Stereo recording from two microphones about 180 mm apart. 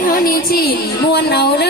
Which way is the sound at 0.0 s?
55° left (ahead or behind).